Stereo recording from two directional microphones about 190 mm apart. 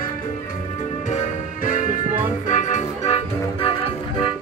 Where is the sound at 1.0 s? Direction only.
40° left (ahead or behind).